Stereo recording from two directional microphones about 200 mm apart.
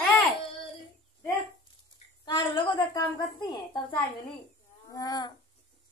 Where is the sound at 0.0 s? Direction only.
10° left (ahead or behind).